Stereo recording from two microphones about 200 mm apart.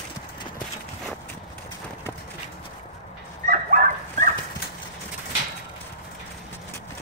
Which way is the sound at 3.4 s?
40° right (ahead or behind).